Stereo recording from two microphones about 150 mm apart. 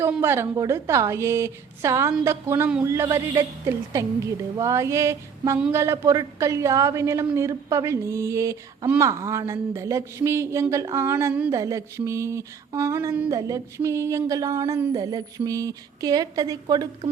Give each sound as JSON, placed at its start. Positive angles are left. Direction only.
{"t": 0.1, "sound": "speech", "side_deg": -15}